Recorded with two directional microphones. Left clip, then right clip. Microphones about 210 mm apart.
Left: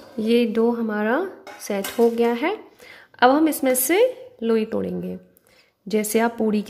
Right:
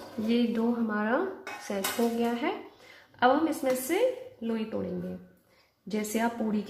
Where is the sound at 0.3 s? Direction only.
45° left (ahead or behind).